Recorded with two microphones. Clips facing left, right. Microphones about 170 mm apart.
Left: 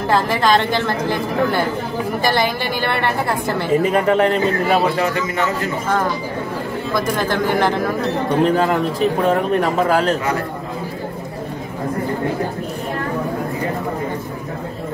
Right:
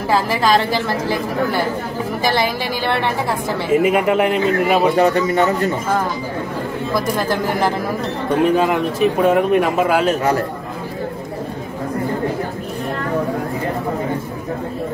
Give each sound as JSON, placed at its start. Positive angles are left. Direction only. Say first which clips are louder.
{"t": 0.1, "sound": "a woman's voice", "louder": "even", "side_deg": -5}
{"t": 4.9, "sound": "a man's voice", "louder": "right 5 dB", "side_deg": -35}
{"t": 8.4, "sound": "speech", "louder": "right 1 dB", "side_deg": -5}